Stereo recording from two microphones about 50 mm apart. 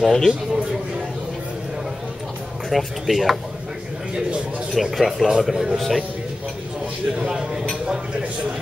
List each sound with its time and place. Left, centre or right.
0.0 s speech: centre
0.3 s a sound: centre
2.7 s speech: centre
4.7 s speech: centre
7.2 s speech: centre